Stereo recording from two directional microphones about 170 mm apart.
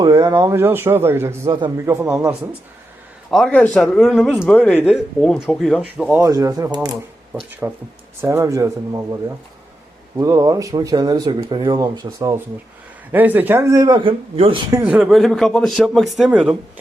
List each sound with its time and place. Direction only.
0.0 s speech: 25° right (ahead or behind)
3.2 s speech: centre (ahead or behind); by 9.0 s 20° right (ahead or behind)
10.2 s speech: 20° right (ahead or behind)
13.1 s speech: 10° right (ahead or behind); by 14.6 s 30° right (ahead or behind)
14.7 s speech: 15° right (ahead or behind)